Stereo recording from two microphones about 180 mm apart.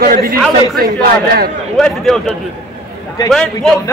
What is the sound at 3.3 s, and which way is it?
Speech, centre (ahead or behind).